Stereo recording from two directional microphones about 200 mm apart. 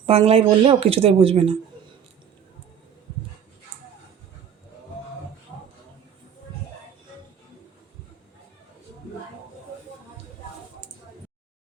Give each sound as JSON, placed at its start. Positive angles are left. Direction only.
{"t": 0.0, "sound": "speech", "side_deg": -30}